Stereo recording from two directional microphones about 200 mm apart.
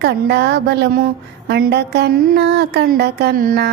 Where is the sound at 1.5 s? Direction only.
55° right (ahead or behind).